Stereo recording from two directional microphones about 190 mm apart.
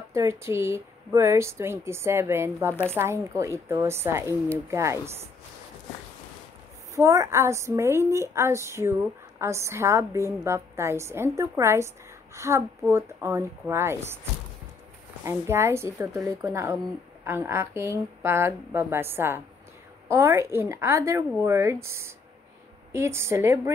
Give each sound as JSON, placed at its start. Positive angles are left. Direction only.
{"t": 0.1, "sound": "speech", "side_deg": -15}
{"t": 2.7, "sound": "speech", "side_deg": 10}
{"t": 3.0, "sound": "speech", "side_deg": -15}
{"t": 7.0, "sound": "speech", "side_deg": -15}
{"t": 15.2, "sound": "speech", "side_deg": -15}